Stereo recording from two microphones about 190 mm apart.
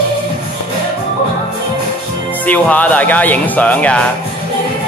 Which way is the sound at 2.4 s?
10° left (ahead or behind).